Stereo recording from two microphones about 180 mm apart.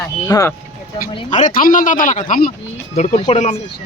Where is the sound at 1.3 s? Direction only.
45° left (ahead or behind).